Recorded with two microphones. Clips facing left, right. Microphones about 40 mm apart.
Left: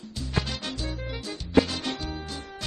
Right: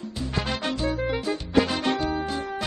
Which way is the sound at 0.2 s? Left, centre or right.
Right.